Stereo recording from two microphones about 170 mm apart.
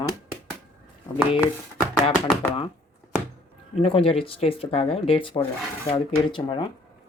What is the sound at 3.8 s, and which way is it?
Speech, 35° left (ahead or behind).